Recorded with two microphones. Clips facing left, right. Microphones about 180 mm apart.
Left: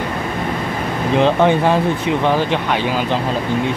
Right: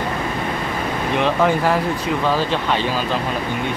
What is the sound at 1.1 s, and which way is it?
Speech, 25° left (ahead or behind).